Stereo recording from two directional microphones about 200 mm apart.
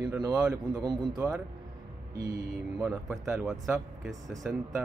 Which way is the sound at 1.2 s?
5° right (ahead or behind).